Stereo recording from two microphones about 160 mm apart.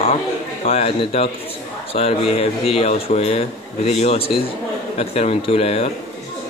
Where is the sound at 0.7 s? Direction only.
40° left (ahead or behind).